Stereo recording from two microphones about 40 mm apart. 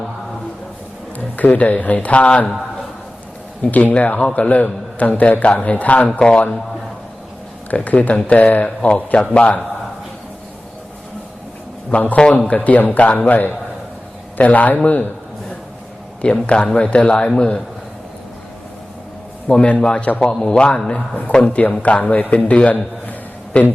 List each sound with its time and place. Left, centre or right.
1.4 s a man's voice: left
3.7 s a man's voice: left
7.7 s a man's voice: left
11.9 s a man's voice: left
16.2 s speech: left
19.5 s a man's voice: left
23.5 s speech: left